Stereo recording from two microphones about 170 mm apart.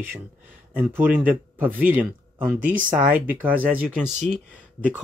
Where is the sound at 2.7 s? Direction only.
50° right (ahead or behind).